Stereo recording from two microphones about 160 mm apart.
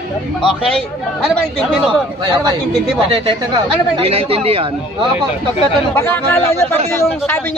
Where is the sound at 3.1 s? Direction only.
35° right (ahead or behind).